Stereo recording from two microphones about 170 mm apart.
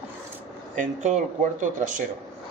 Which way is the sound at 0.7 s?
45° right (ahead or behind).